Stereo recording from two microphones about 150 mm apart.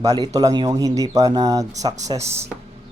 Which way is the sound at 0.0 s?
25° right (ahead or behind).